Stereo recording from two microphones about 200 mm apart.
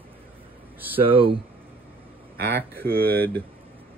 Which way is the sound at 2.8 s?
50° right (ahead or behind).